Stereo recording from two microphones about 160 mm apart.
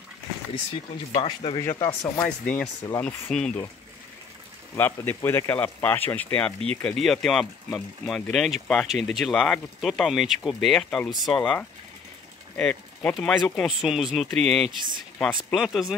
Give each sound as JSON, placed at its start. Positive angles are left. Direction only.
{"t": 1.2, "sound": "speech", "side_deg": 35}
{"t": 1.6, "sound": "speech", "side_deg": 15}
{"t": 4.7, "sound": "speech", "side_deg": 15}